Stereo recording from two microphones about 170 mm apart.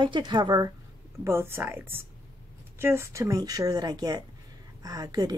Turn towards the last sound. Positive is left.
turn(degrees=-20)  # may be behind; listen again after turning